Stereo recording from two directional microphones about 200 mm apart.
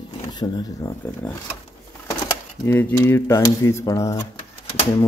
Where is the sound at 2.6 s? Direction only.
10° left (ahead or behind).